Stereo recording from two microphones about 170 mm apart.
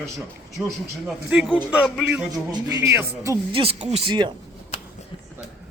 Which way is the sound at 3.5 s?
35° right (ahead or behind).